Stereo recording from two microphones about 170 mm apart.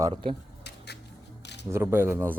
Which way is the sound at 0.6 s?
75° left (ahead or behind).